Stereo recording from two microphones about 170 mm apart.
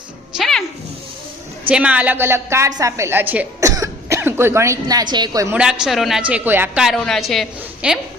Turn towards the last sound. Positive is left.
turn(degrees=-5)  # may be behind; listen again after turning